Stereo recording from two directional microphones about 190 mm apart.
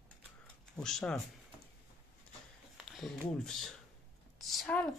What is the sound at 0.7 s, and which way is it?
Speech, 5° left (ahead or behind).